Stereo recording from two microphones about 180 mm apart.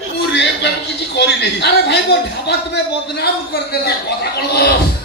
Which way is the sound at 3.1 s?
60° left (ahead or behind).